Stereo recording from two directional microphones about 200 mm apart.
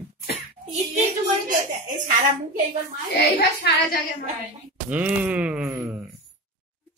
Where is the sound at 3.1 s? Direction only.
50° left (ahead or behind).